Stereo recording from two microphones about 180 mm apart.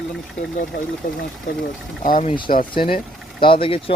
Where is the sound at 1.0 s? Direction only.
45° left (ahead or behind).